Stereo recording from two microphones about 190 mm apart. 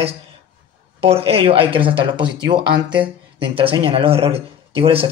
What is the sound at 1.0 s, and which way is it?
Speech, 30° right (ahead or behind).